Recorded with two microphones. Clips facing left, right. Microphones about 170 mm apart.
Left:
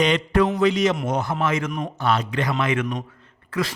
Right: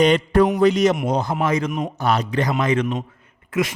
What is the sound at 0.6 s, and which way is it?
Speech, 40° right (ahead or behind).